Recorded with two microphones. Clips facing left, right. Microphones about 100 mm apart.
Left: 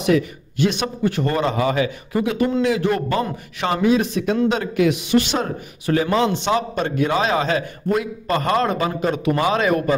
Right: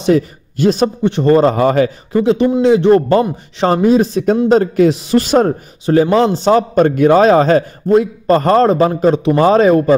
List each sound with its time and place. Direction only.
0.0 s speech: 35° right (ahead or behind)
0.8 s a man's voice: 25° right (ahead or behind); by 1.9 s 45° right (ahead or behind)
2.2 s a man's voice: 30° right (ahead or behind)
5.9 s a man's voice: 30° right (ahead or behind)